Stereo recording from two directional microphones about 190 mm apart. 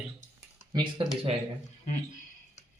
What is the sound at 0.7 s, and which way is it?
Speech, 25° right (ahead or behind).